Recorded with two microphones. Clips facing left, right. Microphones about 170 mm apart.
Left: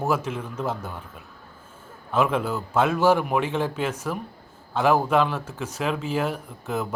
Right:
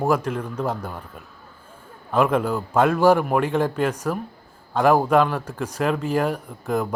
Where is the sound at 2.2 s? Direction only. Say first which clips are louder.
Right 3 dB; 5° left (ahead or behind).